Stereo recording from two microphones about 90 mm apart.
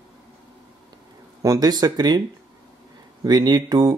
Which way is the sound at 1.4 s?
45° right (ahead or behind).